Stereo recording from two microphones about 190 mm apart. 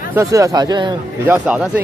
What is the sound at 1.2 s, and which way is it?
Speech, 10° right (ahead or behind).